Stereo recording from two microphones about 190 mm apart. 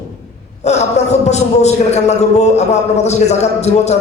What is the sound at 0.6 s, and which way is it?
A man's voice, 35° left (ahead or behind).